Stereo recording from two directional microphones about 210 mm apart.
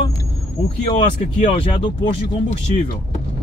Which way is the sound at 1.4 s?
25° left (ahead or behind).